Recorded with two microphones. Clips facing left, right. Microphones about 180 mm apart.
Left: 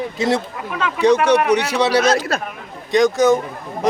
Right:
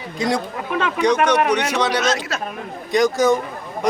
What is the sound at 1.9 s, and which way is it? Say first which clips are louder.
Speech: left 5 dB; 30° left (ahead or behind).